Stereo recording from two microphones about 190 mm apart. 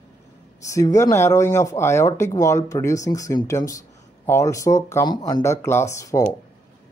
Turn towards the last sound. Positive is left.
turn(degrees=15)  # may be behind; listen again after turning